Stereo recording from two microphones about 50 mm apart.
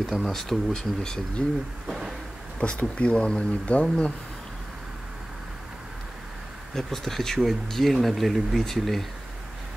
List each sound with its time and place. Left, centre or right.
0.0 s speech: centre
1.9 s a sound: centre
2.6 s speech: left
6.7 s speech: centre